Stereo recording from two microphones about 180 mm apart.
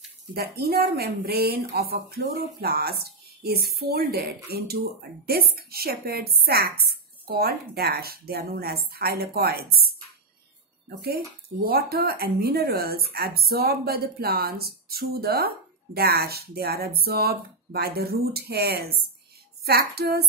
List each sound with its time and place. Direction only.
0.3 s speech: 60° right (ahead or behind)
11.1 s speech: 60° right (ahead or behind)